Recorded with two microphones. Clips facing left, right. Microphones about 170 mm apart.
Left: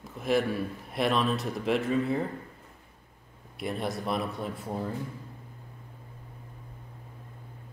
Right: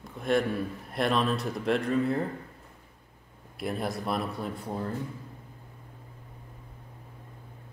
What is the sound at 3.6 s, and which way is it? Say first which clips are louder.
A man's voice: even; centre (ahead or behind).